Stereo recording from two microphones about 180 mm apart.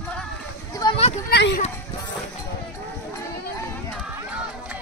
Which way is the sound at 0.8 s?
25° left (ahead or behind).